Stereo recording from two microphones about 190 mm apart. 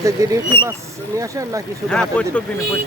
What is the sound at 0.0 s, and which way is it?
Speech, 15° right (ahead or behind).